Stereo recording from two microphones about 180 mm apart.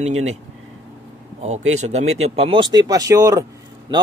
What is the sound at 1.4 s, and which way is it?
Speech, 40° right (ahead or behind).